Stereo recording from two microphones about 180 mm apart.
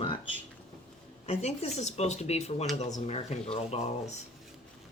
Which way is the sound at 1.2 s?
35° left (ahead or behind).